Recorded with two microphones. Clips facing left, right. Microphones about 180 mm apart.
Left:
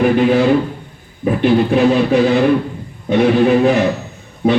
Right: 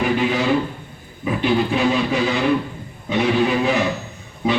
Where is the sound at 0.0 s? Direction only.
55° left (ahead or behind).